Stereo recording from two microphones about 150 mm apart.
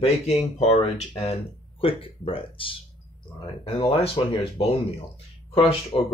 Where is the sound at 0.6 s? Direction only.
45° left (ahead or behind).